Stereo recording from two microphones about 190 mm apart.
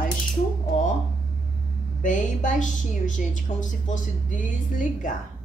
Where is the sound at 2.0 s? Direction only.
45° left (ahead or behind).